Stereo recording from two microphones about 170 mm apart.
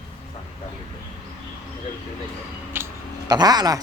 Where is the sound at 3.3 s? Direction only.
25° right (ahead or behind).